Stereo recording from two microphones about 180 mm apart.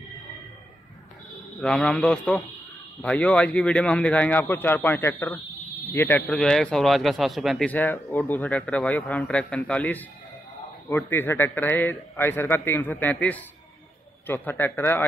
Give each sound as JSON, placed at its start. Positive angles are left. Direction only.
{"t": 1.6, "sound": "a man's voice", "side_deg": 5}